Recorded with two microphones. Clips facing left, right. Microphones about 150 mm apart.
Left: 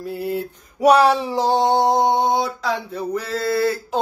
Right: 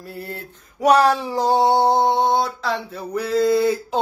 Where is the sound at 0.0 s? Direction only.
Centre (ahead or behind).